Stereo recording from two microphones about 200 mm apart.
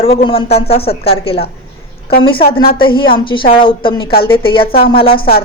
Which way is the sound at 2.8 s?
25° left (ahead or behind).